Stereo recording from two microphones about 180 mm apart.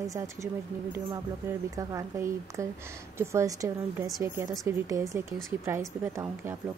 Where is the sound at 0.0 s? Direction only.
20° right (ahead or behind).